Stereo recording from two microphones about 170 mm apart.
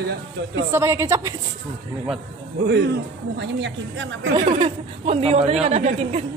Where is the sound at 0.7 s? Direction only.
15° right (ahead or behind).